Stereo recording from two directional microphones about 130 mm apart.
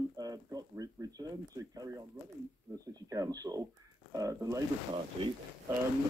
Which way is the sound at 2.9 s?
25° right (ahead or behind).